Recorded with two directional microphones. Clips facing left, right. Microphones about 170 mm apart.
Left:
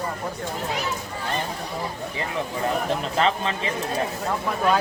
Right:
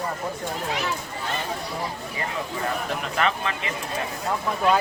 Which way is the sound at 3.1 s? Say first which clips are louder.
Left 1 dB; 30° left (ahead or behind).